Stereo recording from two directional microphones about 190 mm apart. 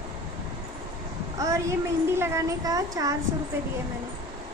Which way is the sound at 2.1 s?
15° right (ahead or behind).